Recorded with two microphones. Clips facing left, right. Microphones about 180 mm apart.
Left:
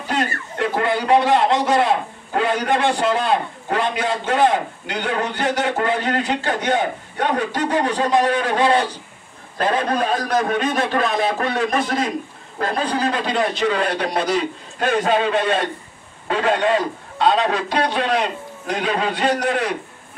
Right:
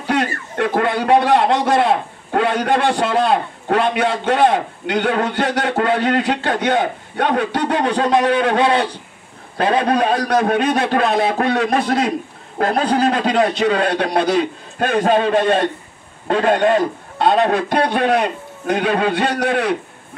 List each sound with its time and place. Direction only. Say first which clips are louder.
0.0 s a man's voice: right 3 dB; 65° right (ahead or behind)
13.3 s a man's voice: right 4 dB; 60° right (ahead or behind)